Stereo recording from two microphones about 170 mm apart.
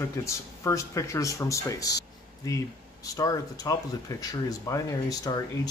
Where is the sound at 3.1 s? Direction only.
20° left (ahead or behind).